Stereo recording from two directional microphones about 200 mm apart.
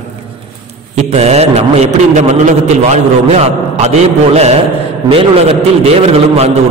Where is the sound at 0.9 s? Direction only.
35° right (ahead or behind).